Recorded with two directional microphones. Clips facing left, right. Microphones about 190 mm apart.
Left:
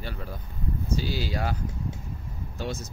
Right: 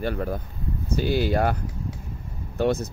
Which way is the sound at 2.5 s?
60° right (ahead or behind).